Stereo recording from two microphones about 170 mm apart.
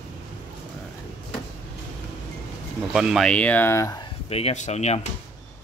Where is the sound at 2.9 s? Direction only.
5° right (ahead or behind).